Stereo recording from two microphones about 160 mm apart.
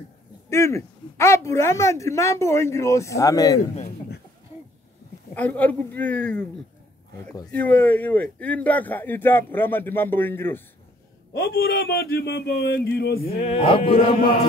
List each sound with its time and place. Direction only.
0.5 s a woman's voice: 15° left (ahead or behind)
5.3 s a woman's voice: 10° left (ahead or behind)
7.5 s a woman's voice: 10° left (ahead or behind)
11.3 s speech: 75° left (ahead or behind); by 13.2 s 90° left
13.5 s music: 35° left (ahead or behind)